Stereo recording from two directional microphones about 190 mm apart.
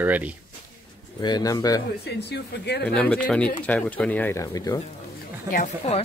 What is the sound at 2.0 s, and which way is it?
Speech, 60° left (ahead or behind).